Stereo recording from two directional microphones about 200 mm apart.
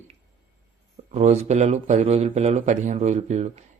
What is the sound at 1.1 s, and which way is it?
Speech, 35° right (ahead or behind).